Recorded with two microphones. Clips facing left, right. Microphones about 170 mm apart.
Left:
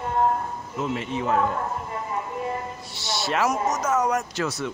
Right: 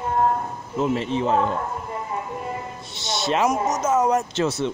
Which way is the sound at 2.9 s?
20° right (ahead or behind).